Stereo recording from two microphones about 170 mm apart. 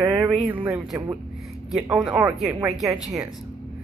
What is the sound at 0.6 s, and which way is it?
Speech, 15° right (ahead or behind).